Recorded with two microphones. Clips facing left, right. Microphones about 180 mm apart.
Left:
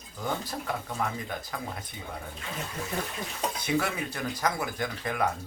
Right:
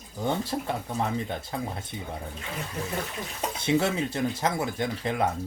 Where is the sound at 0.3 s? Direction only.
25° right (ahead or behind).